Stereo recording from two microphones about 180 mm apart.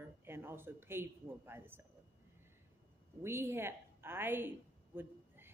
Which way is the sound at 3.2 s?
15° right (ahead or behind).